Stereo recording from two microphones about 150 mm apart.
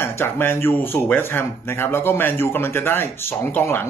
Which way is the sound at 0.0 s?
15° left (ahead or behind).